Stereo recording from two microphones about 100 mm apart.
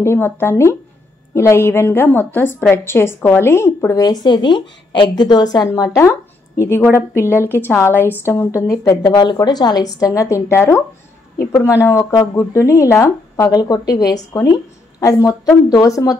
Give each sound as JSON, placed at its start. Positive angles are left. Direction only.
{"t": 0.0, "sound": "a woman's voice", "side_deg": 25}
{"t": 5.7, "sound": "a woman's voice", "side_deg": 30}
{"t": 13.5, "sound": "a woman's voice", "side_deg": 40}